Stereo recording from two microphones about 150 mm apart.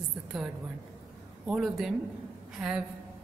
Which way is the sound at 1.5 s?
Centre (ahead or behind).